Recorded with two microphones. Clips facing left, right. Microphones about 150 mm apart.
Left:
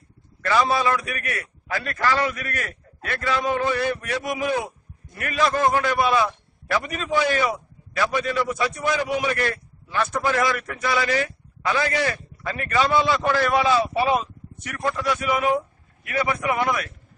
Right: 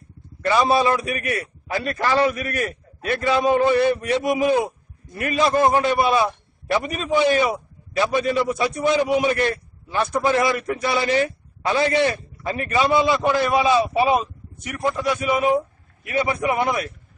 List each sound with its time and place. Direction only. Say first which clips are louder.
0.5 s a man's voice: right 3 dB; 25° right (ahead or behind)